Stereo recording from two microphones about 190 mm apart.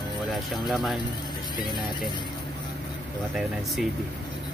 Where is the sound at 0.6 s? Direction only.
Centre (ahead or behind).